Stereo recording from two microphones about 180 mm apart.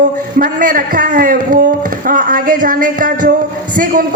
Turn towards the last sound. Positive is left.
turn(degrees=-50)  # may be behind; listen again after turning